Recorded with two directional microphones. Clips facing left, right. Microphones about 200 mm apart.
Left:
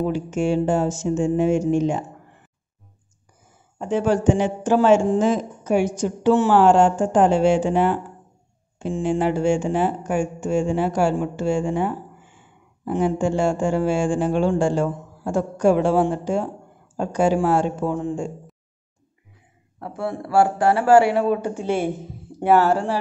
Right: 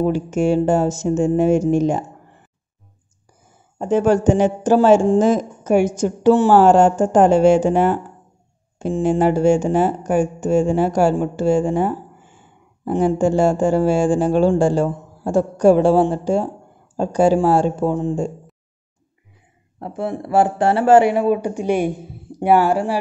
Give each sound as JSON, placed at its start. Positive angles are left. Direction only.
{"t": 0.0, "sound": "speech", "side_deg": -40}
{"t": 3.7, "sound": "speech", "side_deg": -45}
{"t": 19.8, "sound": "speech", "side_deg": -20}